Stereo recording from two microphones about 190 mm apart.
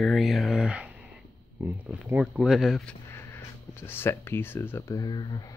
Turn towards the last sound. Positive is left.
turn(degrees=20)  # may be behind; listen again after turning